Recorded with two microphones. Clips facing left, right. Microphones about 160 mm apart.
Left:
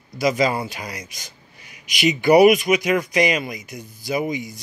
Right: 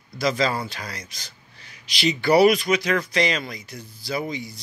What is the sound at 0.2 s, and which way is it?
A man's voice, 15° left (ahead or behind).